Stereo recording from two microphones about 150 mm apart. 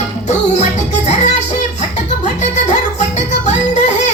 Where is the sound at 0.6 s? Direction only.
50° left (ahead or behind).